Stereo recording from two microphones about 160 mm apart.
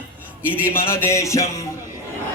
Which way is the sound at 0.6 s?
15° left (ahead or behind).